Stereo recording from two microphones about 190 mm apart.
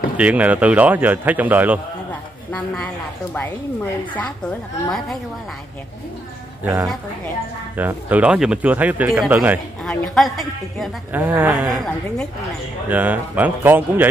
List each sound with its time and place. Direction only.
0.2 s speech: 5° right (ahead or behind)
2.5 s a woman's voice: 5° left (ahead or behind)
4.8 s a woman's voice: centre (ahead or behind)
6.6 s speech: 20° right (ahead or behind)
9.8 s a woman's voice: 5° left (ahead or behind)
11.1 s speech: 10° right (ahead or behind)
11.7 s a woman's voice: centre (ahead or behind)